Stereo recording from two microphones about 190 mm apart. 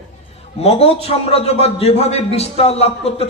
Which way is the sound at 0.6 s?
30° left (ahead or behind).